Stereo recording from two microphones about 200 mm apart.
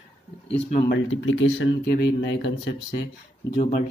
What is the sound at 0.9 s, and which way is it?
Speech, 85° left.